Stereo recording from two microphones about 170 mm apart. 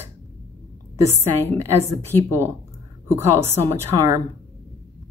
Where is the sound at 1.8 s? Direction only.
15° right (ahead or behind).